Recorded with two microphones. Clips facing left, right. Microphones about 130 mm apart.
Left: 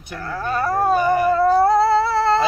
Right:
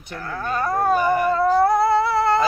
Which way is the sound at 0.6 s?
30° left (ahead or behind).